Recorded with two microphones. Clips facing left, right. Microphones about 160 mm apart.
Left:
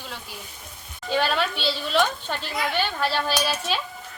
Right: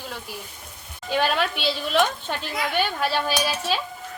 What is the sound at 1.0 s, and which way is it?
A woman's voice, 10° right (ahead or behind).